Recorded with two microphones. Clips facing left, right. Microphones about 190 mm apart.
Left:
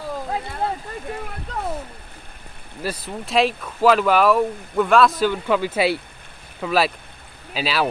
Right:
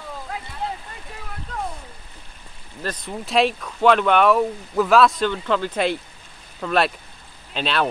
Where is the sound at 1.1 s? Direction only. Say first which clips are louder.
Left 10 dB; 55° left (ahead or behind).